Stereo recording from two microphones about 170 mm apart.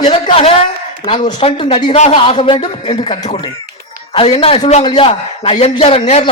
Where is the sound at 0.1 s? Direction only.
35° left (ahead or behind).